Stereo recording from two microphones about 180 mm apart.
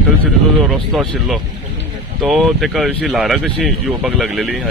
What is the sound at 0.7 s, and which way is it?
Speech, centre (ahead or behind).